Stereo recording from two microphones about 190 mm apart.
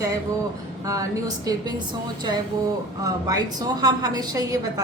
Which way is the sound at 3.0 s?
20° right (ahead or behind).